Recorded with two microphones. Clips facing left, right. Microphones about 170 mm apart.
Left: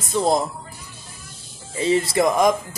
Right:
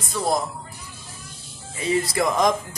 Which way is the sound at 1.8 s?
25° left (ahead or behind).